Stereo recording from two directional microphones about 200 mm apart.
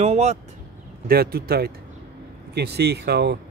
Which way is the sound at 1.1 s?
50° right (ahead or behind).